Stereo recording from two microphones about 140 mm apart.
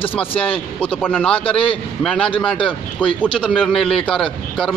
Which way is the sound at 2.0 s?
5° left (ahead or behind).